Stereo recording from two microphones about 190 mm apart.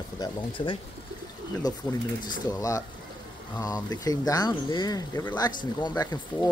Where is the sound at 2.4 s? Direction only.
15° left (ahead or behind).